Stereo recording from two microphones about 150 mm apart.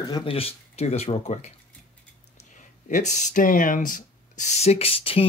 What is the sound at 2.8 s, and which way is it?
Speech, 55° left (ahead or behind).